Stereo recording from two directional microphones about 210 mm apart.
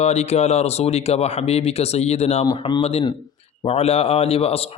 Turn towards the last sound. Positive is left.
turn(degrees=30)  # may be behind; listen again after turning